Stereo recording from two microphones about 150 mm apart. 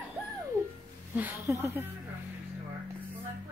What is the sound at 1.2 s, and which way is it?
Speech, 15° right (ahead or behind).